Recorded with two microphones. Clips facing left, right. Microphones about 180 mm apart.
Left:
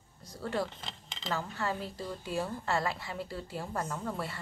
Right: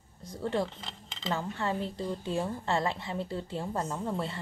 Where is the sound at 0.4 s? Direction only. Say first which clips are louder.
Right 3 dB; 20° right (ahead or behind).